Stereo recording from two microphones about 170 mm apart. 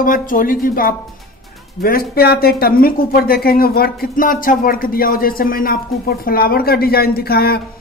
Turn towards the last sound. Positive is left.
turn(degrees=65)  # may be behind; listen again after turning